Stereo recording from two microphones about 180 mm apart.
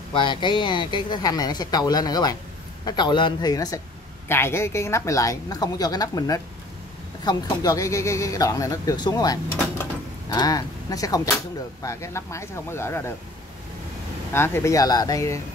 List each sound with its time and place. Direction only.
0.1 s speech: 25° left (ahead or behind)
14.3 s speech: 15° left (ahead or behind)